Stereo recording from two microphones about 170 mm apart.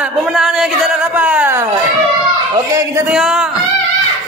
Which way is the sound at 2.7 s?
5° right (ahead or behind).